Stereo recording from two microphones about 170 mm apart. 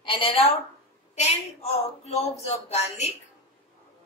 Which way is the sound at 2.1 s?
40° left (ahead or behind).